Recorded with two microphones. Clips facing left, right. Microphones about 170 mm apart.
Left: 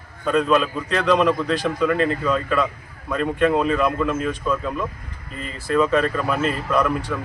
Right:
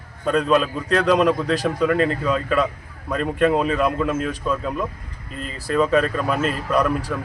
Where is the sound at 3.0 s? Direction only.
40° right (ahead or behind).